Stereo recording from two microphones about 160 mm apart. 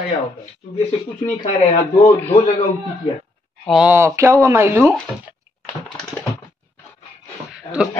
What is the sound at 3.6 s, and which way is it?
Speech, 5° right (ahead or behind).